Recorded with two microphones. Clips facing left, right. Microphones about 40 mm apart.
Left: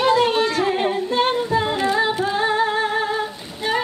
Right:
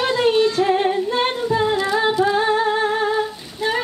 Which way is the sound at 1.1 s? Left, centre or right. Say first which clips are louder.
Left 1 dB; centre.